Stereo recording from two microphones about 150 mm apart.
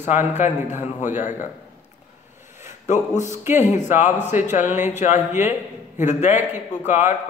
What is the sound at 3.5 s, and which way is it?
Speech, 50° left (ahead or behind).